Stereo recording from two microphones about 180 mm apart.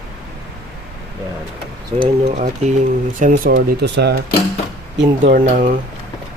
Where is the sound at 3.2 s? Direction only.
50° right (ahead or behind).